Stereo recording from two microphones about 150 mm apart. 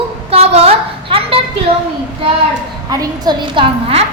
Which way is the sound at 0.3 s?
45° right (ahead or behind).